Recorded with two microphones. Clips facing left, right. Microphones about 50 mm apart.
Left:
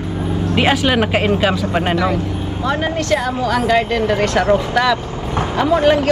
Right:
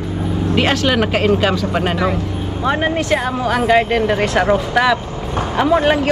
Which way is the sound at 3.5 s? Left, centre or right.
Centre.